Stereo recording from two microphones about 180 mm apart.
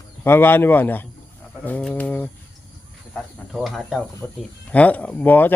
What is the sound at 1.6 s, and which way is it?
Bird, 10° left (ahead or behind).